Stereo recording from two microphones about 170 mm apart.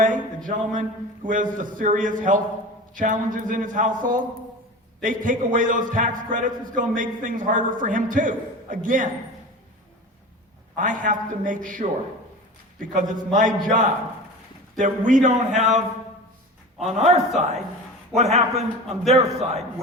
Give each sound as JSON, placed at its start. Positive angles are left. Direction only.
{"t": 0.0, "sound": "a man's voice", "side_deg": -50}
{"t": 10.8, "sound": "a man's voice", "side_deg": -50}
{"t": 14.8, "sound": "a man's voice", "side_deg": -50}
{"t": 15.5, "sound": "a sound", "side_deg": 0}
{"t": 16.8, "sound": "a man's voice", "side_deg": -40}